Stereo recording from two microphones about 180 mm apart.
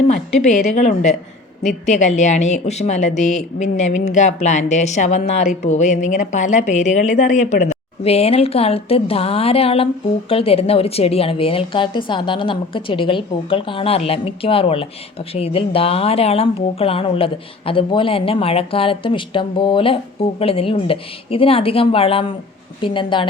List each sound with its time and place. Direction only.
0.1 s a woman's voice: 40° left (ahead or behind)